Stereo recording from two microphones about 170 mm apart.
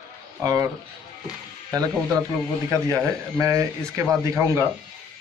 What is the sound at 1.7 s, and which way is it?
Speech, 20° right (ahead or behind).